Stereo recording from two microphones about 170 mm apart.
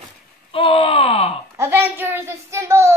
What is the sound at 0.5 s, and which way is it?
Groan, 35° left (ahead or behind).